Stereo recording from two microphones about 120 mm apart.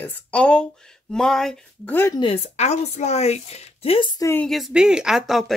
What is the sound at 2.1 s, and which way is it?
Speech, 45° left (ahead or behind).